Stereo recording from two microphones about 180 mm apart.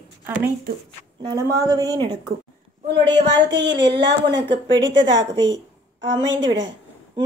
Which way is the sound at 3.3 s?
75° right (ahead or behind).